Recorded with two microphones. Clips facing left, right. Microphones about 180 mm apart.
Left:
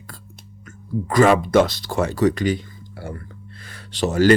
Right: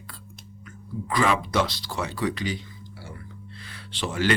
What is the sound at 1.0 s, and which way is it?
Speech, 45° left (ahead or behind).